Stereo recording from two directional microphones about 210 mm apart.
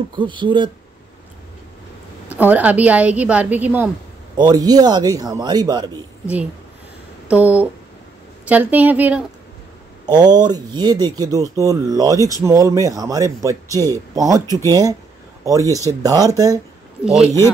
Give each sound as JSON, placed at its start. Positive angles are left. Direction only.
{"t": 0.1, "sound": "a man's voice", "side_deg": -25}
{"t": 2.3, "sound": "a man's voice", "side_deg": -10}
{"t": 7.2, "sound": "speech", "side_deg": -5}
{"t": 10.1, "sound": "speech", "side_deg": -20}
{"t": 17.0, "sound": "speech", "side_deg": -5}